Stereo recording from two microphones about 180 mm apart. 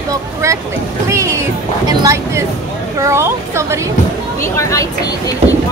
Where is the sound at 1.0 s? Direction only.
15° right (ahead or behind).